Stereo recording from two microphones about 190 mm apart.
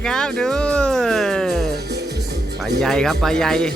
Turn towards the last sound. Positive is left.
turn(degrees=5)  # may be behind; listen again after turning